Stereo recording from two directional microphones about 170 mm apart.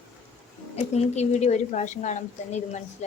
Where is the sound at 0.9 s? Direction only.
40° left (ahead or behind).